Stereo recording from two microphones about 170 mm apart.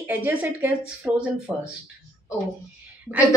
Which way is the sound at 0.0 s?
10° right (ahead or behind).